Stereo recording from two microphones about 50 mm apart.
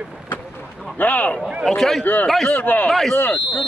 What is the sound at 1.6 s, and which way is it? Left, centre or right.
Speech, centre.